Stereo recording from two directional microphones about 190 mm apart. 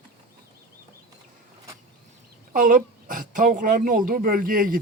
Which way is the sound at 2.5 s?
45° right (ahead or behind).